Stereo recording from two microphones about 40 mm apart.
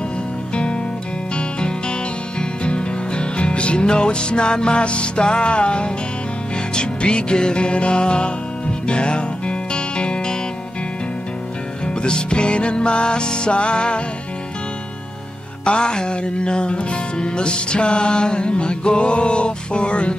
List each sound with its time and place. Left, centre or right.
1.3 s music: left
11.8 s music: left
15.6 s music: left